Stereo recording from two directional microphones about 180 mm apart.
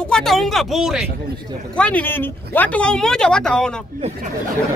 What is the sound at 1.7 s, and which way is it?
Speech, 5° left (ahead or behind).